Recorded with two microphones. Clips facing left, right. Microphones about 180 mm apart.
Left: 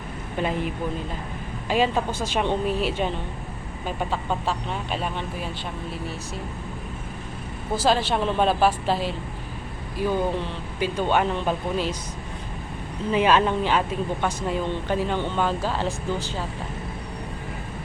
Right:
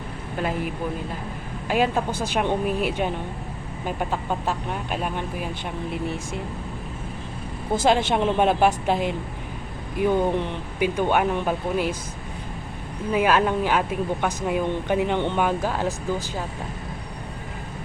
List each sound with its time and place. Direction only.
0.3 s speech: 5° right (ahead or behind)
1.7 s speech: 10° right (ahead or behind)
5.9 s speech: 20° right (ahead or behind)
7.9 s speech: 20° right (ahead or behind)
13.1 s speech: 10° right (ahead or behind)